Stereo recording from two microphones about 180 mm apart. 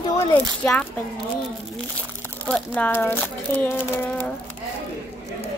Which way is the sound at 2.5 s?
5° left (ahead or behind).